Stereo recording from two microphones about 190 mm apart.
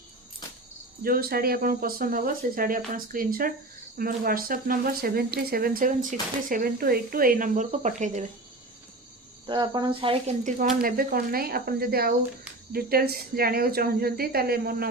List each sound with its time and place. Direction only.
1.0 s speech: 50° right (ahead or behind)
9.5 s cricket: 25° right (ahead or behind)
10.8 s speech: 50° right (ahead or behind)